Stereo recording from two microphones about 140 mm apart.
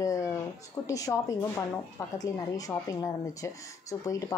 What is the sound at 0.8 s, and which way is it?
Speech, 25° left (ahead or behind).